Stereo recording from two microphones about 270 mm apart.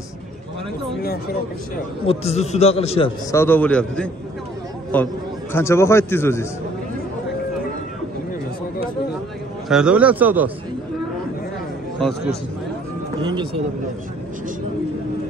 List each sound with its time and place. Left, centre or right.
2.0 s a man's voice: left
3.3 s a man's voice: centre
9.7 s a man's voice: centre
13.2 s speech: centre